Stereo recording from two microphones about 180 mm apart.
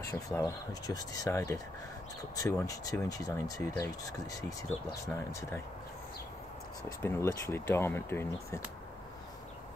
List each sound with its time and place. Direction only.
0.1 s speech: 20° left (ahead or behind)
7.0 s speech: 15° left (ahead or behind)